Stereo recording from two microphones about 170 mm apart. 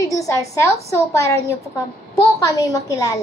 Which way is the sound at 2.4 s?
20° left (ahead or behind).